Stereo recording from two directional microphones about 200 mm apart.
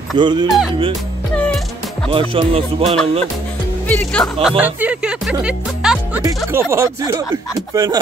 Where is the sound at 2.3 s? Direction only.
30° right (ahead or behind).